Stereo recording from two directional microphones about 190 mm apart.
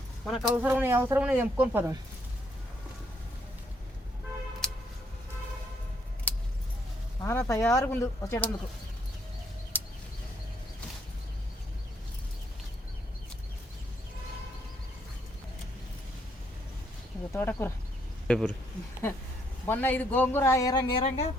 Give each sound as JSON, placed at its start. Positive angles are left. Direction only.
{"t": 0.3, "sound": "speech", "side_deg": -5}
{"t": 4.6, "sound": "a sound", "side_deg": 5}
{"t": 6.3, "sound": "a sound", "side_deg": 10}
{"t": 7.2, "sound": "speech", "side_deg": 15}
{"t": 17.3, "sound": "speech", "side_deg": 10}
{"t": 19.6, "sound": "speech", "side_deg": 10}